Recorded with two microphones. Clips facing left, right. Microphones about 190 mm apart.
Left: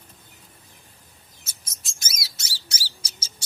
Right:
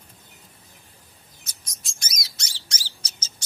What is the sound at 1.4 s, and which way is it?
Bird, 5° left (ahead or behind).